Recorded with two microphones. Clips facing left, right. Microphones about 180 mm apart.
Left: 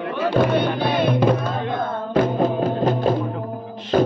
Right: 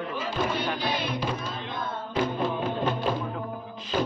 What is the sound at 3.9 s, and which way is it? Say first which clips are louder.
Music: left 10 dB; 50° left (ahead or behind).